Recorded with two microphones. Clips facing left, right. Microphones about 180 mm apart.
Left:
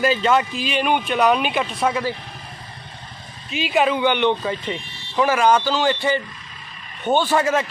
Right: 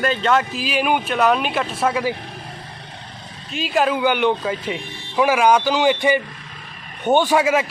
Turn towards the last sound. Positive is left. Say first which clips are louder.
# right 2 dB
turn(degrees=-10)  # may be behind; listen again after turning